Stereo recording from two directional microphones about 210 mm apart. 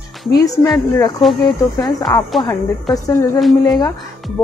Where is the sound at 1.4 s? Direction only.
15° left (ahead or behind).